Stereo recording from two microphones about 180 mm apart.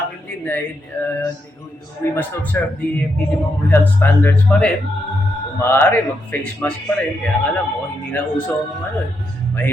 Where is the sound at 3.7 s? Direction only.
10° left (ahead or behind).